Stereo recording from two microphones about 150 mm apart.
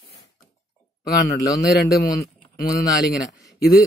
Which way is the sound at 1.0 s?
90° left.